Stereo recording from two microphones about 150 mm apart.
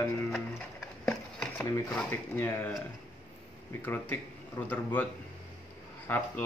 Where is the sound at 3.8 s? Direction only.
15° left (ahead or behind).